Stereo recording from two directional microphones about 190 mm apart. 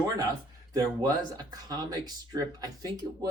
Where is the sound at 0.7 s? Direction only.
20° right (ahead or behind).